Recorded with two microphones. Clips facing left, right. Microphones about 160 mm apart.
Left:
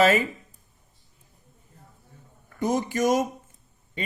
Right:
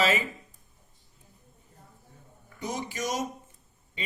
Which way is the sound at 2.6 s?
50° left (ahead or behind).